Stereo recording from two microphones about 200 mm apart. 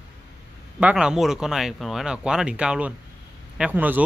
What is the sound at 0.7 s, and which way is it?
Speech, 5° right (ahead or behind).